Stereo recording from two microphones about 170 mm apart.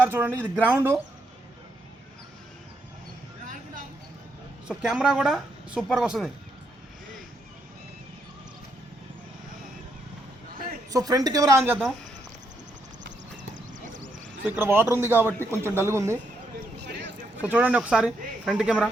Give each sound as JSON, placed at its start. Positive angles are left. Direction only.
{"t": 0.0, "sound": "a man's voice", "side_deg": -10}
{"t": 3.4, "sound": "a sound", "side_deg": -50}
{"t": 4.7, "sound": "speech", "side_deg": -5}
{"t": 10.9, "sound": "speech", "side_deg": -20}
{"t": 14.4, "sound": "a man's voice", "side_deg": -15}
{"t": 15.4, "sound": "speech", "side_deg": 10}
{"t": 15.6, "sound": "a man's voice", "side_deg": -15}
{"t": 17.4, "sound": "a man's voice", "side_deg": -10}